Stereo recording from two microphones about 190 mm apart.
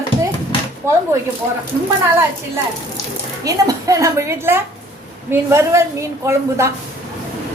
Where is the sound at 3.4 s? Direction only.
20° right (ahead or behind).